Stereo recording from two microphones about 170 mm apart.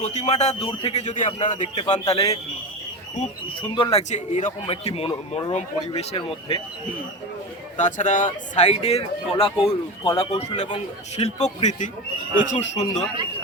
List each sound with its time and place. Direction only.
0.0 s a man's voice: 40° left (ahead or behind)
1.9 s a man's voice: 35° left (ahead or behind)
3.6 s a man's voice: 30° left (ahead or behind)
4.1 s a man's voice: 45° left (ahead or behind)
7.8 s a man's voice: 45° left (ahead or behind)